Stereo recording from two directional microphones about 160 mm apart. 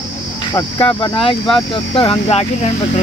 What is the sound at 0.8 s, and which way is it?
Speech, 35° left (ahead or behind).